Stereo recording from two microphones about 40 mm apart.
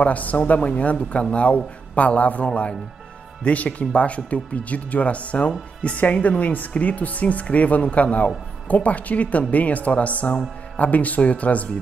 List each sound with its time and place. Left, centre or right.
0.0 s speech: left